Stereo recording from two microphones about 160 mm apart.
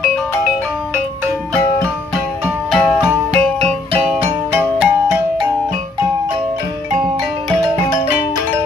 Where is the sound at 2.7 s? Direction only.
Centre (ahead or behind).